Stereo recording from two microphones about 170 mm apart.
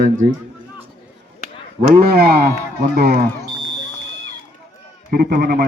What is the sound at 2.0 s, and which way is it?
Speech, 65° right (ahead or behind).